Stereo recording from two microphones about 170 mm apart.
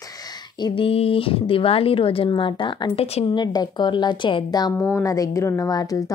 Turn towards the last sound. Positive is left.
turn(degrees=20)  # may be behind; listen again after turning